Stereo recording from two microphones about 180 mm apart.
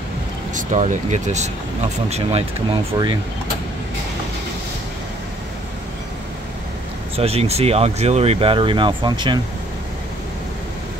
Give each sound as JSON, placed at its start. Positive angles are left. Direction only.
{"t": 0.6, "sound": "speech", "side_deg": -45}
{"t": 7.2, "sound": "speech", "side_deg": -35}